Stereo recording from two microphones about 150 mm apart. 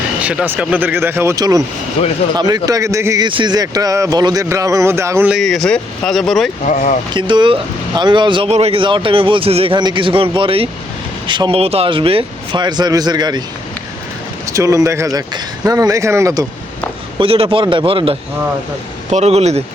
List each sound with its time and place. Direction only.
0.2 s speech: 10° right (ahead or behind)
2.0 s speech: 40° left (ahead or behind)
2.3 s speech: 25° right (ahead or behind)
3.2 s speech: 30° right (ahead or behind)
5.3 s speech: centre (ahead or behind)
6.7 s speech: 60° left (ahead or behind)
7.1 s speech: 30° right (ahead or behind)
14.5 s speech: 20° right (ahead or behind)
17.2 s speech: 40° right (ahead or behind)